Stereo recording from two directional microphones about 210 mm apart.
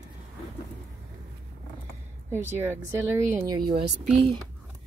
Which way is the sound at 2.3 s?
10° right (ahead or behind).